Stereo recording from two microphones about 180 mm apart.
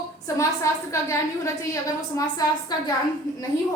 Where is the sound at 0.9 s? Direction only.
15° left (ahead or behind).